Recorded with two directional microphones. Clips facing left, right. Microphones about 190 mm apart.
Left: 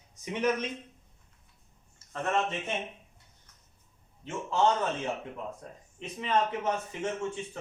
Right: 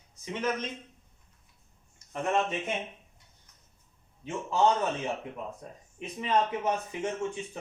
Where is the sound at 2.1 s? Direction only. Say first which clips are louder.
Right 1 dB; 15° right (ahead or behind).